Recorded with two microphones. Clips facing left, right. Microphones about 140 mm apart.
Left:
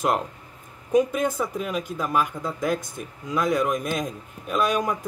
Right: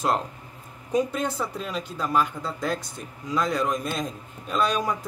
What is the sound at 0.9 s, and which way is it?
A man's voice, 10° left (ahead or behind).